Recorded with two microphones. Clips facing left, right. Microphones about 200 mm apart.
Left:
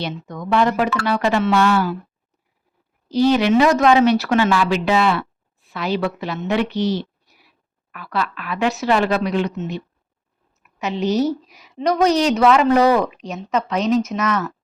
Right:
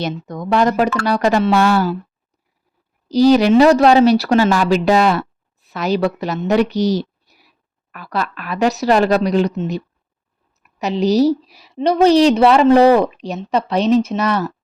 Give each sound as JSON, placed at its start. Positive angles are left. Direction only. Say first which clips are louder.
{"t": 0.0, "sound": "a woman's voice", "louder": "right 4 dB", "side_deg": -40}
{"t": 3.1, "sound": "a woman's voice", "louder": "right 4 dB", "side_deg": -40}